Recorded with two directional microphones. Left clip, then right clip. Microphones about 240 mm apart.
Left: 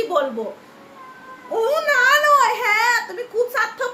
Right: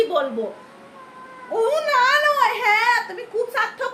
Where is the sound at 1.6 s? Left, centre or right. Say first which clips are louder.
Left 1 dB; centre.